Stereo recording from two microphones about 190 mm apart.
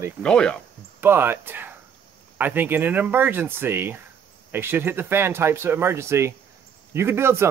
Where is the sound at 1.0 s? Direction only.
10° right (ahead or behind).